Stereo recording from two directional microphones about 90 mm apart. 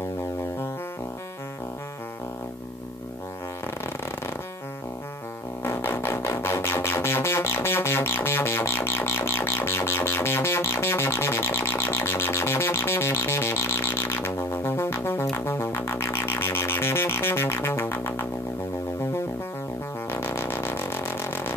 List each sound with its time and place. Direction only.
5.6 s music: 25° left (ahead or behind)
20.1 s vehicle: 25° left (ahead or behind)